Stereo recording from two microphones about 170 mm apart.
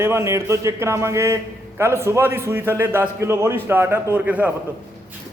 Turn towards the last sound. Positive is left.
turn(degrees=-10)  # may be behind; listen again after turning